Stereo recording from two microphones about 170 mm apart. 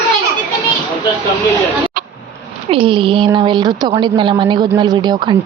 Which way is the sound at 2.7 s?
30° right (ahead or behind).